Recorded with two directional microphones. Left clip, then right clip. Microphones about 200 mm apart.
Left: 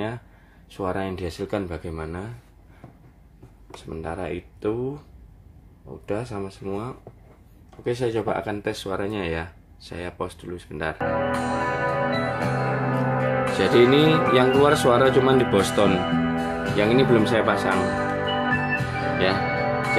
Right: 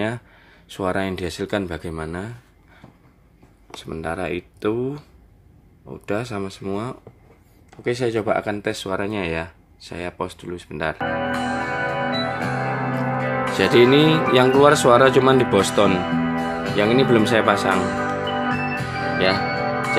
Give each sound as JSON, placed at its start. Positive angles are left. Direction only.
{"t": 0.7, "sound": "speech", "side_deg": -35}
{"t": 3.7, "sound": "speech", "side_deg": -35}
{"t": 6.0, "sound": "speech", "side_deg": -40}
{"t": 11.0, "sound": "music", "side_deg": -5}
{"t": 13.6, "sound": "speech", "side_deg": -25}
{"t": 16.0, "sound": "music", "side_deg": -5}